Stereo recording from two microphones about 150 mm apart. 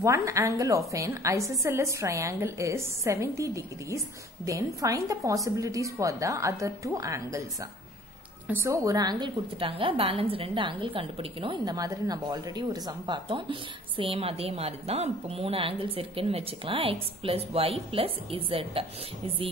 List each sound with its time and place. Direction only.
0.0 s a woman's voice: 20° right (ahead or behind)
8.5 s a woman's voice: 15° right (ahead or behind)
8.8 s a woman's voice: 25° right (ahead or behind)